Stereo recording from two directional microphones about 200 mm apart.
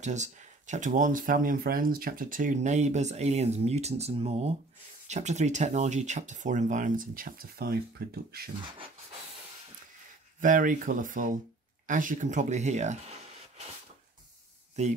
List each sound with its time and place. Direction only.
0.0 s speech: 35° right (ahead or behind)
10.4 s speech: 40° right (ahead or behind)